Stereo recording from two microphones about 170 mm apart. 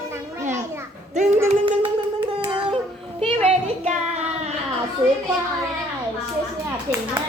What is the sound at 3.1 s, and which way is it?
Speech, 35° right (ahead or behind).